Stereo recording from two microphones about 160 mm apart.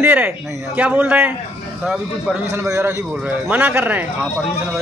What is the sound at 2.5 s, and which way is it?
A man's voice, 20° right (ahead or behind).